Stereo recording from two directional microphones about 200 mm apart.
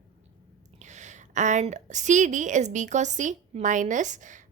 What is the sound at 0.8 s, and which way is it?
A woman's voice, 35° right (ahead or behind).